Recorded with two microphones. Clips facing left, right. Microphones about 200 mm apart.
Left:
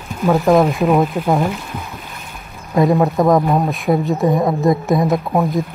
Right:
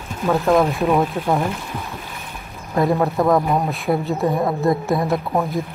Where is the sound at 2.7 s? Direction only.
15° left (ahead or behind).